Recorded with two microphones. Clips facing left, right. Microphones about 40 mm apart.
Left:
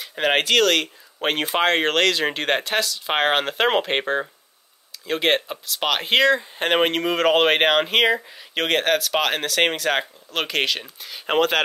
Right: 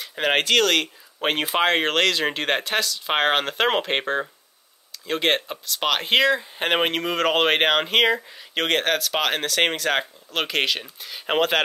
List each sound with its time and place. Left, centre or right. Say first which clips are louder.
0.0 s speech: left 1 dB; centre